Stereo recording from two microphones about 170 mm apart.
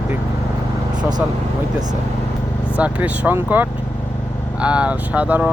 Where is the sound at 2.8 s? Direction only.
10° right (ahead or behind).